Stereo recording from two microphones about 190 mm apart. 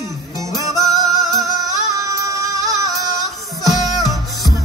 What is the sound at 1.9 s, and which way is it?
Child singing, 15° right (ahead or behind).